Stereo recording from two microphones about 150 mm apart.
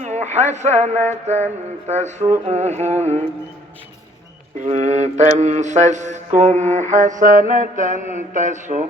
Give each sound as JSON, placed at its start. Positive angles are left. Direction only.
{"t": 0.0, "sound": "speech", "side_deg": -50}
{"t": 1.9, "sound": "mantra", "side_deg": -50}
{"t": 4.6, "sound": "mantra", "side_deg": -55}
{"t": 8.1, "sound": "speech", "side_deg": -55}